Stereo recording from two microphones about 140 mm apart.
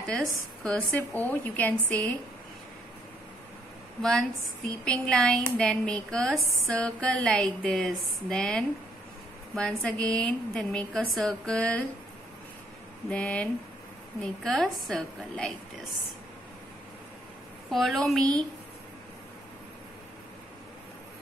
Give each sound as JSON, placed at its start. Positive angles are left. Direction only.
{"t": 0.7, "sound": "a woman's voice", "side_deg": 10}
{"t": 4.0, "sound": "a woman's voice", "side_deg": 5}
{"t": 13.1, "sound": "a woman's voice", "side_deg": 10}
{"t": 17.6, "sound": "a woman's voice", "side_deg": 0}